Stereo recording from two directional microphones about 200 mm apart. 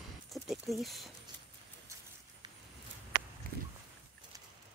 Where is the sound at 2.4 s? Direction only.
20° right (ahead or behind).